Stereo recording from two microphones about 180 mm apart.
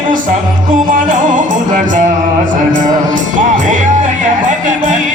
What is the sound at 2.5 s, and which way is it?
Music, 45° right (ahead or behind).